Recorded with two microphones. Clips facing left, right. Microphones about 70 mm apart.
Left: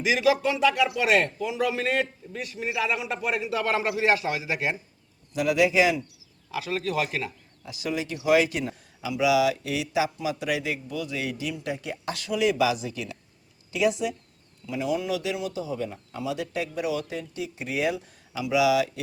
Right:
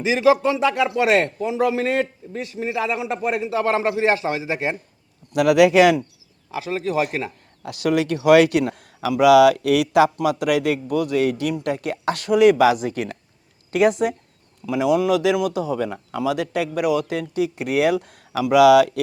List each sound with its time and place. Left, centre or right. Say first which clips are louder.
0.0 s a man's voice: right 6 dB; right
5.3 s speech: right 8 dB; right
6.5 s a man's voice: right 4 dB; right
7.6 s a woman's voice: right 10 dB; right
14.7 s a man's voice: right 9 dB; right